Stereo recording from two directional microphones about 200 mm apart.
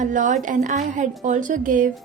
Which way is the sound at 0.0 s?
40° right (ahead or behind).